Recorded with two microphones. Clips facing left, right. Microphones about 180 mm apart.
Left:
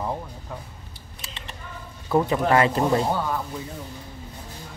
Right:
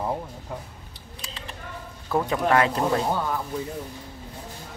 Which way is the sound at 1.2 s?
Centre (ahead or behind).